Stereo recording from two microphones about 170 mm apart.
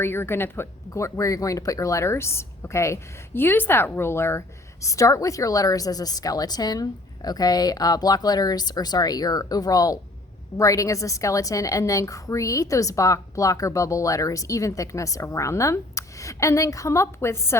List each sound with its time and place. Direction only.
0.0 s speech: 15° left (ahead or behind)